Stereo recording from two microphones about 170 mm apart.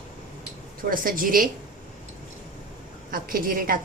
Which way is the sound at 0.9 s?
55° right (ahead or behind).